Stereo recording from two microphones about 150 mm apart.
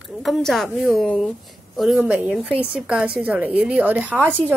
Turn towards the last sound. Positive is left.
turn(degrees=-10)  # may be behind; listen again after turning